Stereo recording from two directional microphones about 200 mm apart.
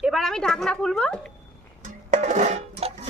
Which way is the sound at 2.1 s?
35° right (ahead or behind).